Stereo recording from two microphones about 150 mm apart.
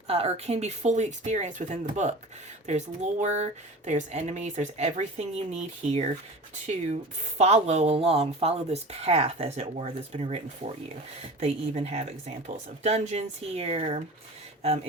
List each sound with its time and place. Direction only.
0.1 s speech: 45° right (ahead or behind)